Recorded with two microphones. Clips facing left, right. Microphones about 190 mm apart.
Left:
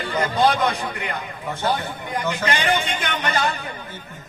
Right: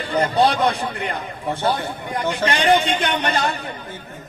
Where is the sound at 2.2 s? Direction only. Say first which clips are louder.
Right 3 dB; 30° right (ahead or behind).